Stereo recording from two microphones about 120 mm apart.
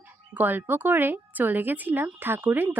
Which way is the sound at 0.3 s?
15° right (ahead or behind).